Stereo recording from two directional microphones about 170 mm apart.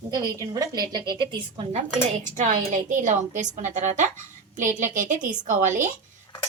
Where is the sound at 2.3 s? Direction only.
50° right (ahead or behind).